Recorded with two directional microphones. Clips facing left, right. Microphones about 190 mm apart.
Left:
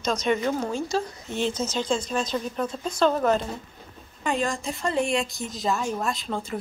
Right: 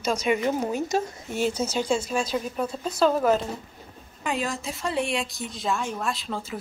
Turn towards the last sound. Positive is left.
turn(degrees=0)  # may be behind; listen again after turning